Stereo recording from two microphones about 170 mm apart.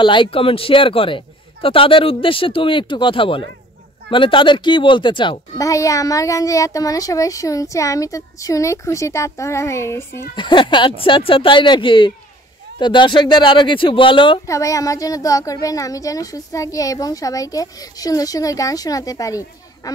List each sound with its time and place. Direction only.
0.0 s a man's voice: 30° left (ahead or behind)
10.3 s a child's voice: 30° left (ahead or behind)
14.4 s a child's voice: 20° left (ahead or behind)